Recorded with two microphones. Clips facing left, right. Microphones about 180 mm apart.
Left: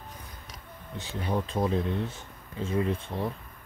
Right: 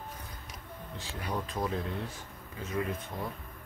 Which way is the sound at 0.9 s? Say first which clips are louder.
Left 6 dB; 25° left (ahead or behind).